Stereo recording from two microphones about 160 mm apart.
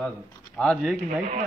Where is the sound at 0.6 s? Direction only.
5° left (ahead or behind).